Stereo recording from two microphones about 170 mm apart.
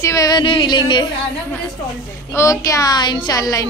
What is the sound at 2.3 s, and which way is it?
Speech, 20° left (ahead or behind).